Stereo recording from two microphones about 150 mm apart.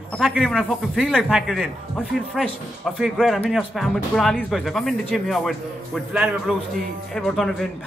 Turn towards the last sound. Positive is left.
turn(degrees=0)  # may be behind; listen again after turning